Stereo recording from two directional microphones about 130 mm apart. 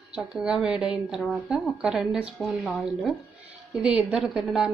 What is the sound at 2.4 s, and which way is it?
Stir, 5° right (ahead or behind).